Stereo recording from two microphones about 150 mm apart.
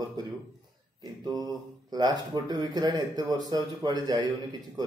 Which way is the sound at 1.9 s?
25° right (ahead or behind).